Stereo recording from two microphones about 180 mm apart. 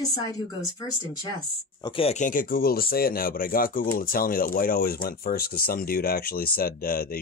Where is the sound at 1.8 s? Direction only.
30° left (ahead or behind).